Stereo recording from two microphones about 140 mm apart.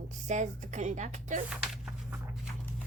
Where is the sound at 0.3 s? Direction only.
60° right (ahead or behind).